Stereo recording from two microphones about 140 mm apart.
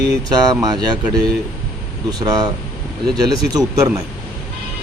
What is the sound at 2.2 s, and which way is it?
Speech, 25° right (ahead or behind).